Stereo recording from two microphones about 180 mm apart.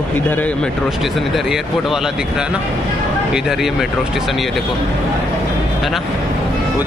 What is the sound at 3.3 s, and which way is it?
Speech, centre (ahead or behind).